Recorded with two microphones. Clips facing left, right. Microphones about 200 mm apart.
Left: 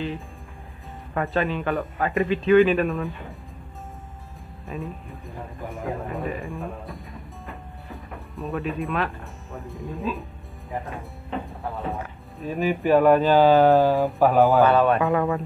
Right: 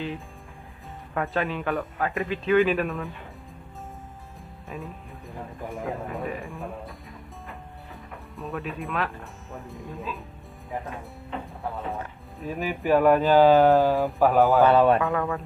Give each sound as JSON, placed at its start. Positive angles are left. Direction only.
{"t": 1.1, "sound": "speech", "side_deg": 0}
{"t": 4.6, "sound": "speech", "side_deg": 0}
{"t": 11.7, "sound": "speech", "side_deg": 0}
{"t": 13.8, "sound": "speech", "side_deg": 0}
{"t": 14.7, "sound": "music", "side_deg": -30}
{"t": 15.0, "sound": "mantra", "side_deg": 15}